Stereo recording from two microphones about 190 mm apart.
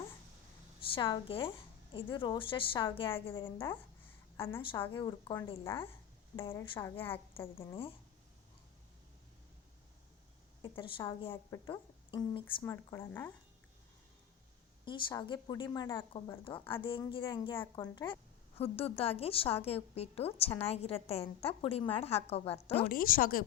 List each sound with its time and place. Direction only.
0.9 s a woman's voice: 25° left (ahead or behind)
3.3 s speech: 15° left (ahead or behind)
4.7 s a woman's voice: 25° left (ahead or behind)
6.5 s speech: 15° left (ahead or behind)
10.6 s a woman's voice: 25° left (ahead or behind)
12.6 s speech: 15° left (ahead or behind)
14.8 s a woman's voice: 25° left (ahead or behind)
22.9 s speech: 50° left (ahead or behind)